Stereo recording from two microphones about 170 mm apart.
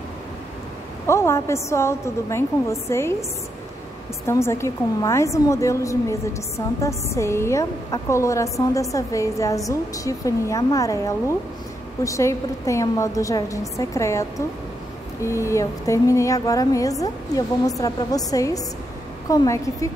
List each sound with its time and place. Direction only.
1.0 s a woman's voice: 15° left (ahead or behind)
4.3 s a woman's voice: 15° left (ahead or behind)
15.2 s a woman's voice: 15° left (ahead or behind)